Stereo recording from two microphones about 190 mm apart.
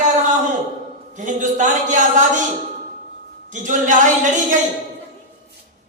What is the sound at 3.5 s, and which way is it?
Speech, 40° right (ahead or behind).